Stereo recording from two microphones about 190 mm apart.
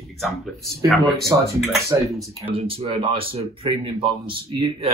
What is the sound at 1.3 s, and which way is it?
Speech, 20° right (ahead or behind).